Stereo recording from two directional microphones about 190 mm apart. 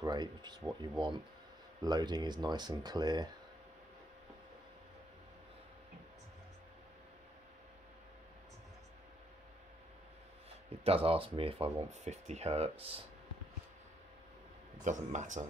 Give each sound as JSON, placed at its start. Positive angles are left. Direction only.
{"t": 0.0, "sound": "speech", "side_deg": -20}
{"t": 10.8, "sound": "speech", "side_deg": -30}
{"t": 14.9, "sound": "speech", "side_deg": -40}